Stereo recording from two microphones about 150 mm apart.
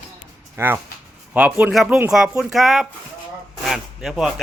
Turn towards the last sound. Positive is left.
turn(degrees=0)  # may be behind; listen again after turning